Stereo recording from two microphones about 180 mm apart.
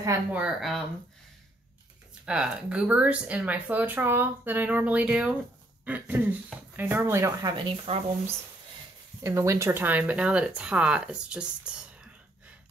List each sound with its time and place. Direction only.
0.0 s speech: 20° right (ahead or behind)
0.4 s speech: centre (ahead or behind)
2.2 s speech: 5° right (ahead or behind); by 8.0 s 30° right (ahead or behind)
9.2 s speech: 15° right (ahead or behind)